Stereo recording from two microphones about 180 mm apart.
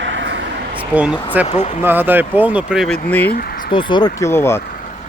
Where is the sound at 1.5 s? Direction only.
40° left (ahead or behind).